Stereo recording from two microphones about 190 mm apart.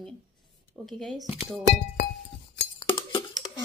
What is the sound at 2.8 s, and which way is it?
Chink, 25° left (ahead or behind).